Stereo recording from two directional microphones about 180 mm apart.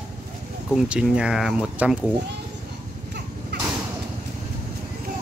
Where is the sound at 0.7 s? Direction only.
5° right (ahead or behind).